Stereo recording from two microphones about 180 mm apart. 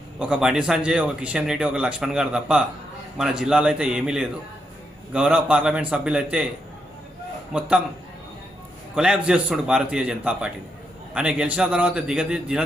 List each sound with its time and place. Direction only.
0.2 s speech: 5° right (ahead or behind)
7.5 s a man's voice: 5° right (ahead or behind)
9.0 s speech: 5° right (ahead or behind)